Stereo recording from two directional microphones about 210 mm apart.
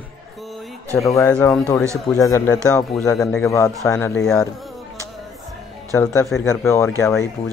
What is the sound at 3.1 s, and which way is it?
Speech, 5° left (ahead or behind).